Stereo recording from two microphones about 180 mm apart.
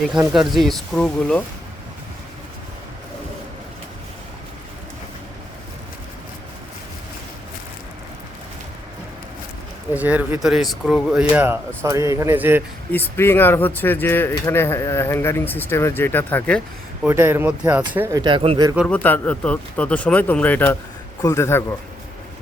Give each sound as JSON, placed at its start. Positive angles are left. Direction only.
{"t": 0.3, "sound": "speech", "side_deg": 0}
{"t": 9.9, "sound": "speech", "side_deg": -10}
{"t": 12.9, "sound": "speech", "side_deg": 10}
{"t": 17.0, "sound": "speech", "side_deg": -10}
{"t": 18.2, "sound": "speech", "side_deg": -25}
{"t": 18.9, "sound": "speech", "side_deg": 10}